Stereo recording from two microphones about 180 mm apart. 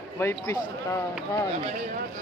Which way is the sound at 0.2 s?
15° left (ahead or behind).